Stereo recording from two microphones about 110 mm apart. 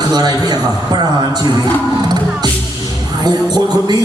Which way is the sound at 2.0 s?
40° right (ahead or behind).